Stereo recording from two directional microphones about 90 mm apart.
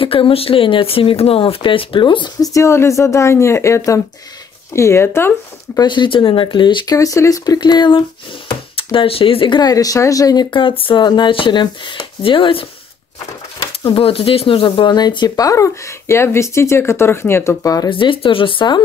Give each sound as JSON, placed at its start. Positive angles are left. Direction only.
{"t": 0.0, "sound": "speech", "side_deg": 90}
{"t": 2.4, "sound": "speech", "side_deg": 35}
{"t": 5.8, "sound": "speech", "side_deg": 60}
{"t": 7.0, "sound": "speech", "side_deg": 40}
{"t": 9.6, "sound": "speech", "side_deg": 45}
{"t": 10.5, "sound": "speech", "side_deg": 80}
{"t": 11.1, "sound": "speech", "side_deg": 60}
{"t": 13.9, "sound": "speech", "side_deg": 90}
{"t": 17.8, "sound": "speech", "side_deg": 70}